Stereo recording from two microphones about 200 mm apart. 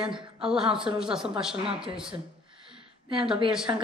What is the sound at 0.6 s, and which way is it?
Speech, 25° right (ahead or behind).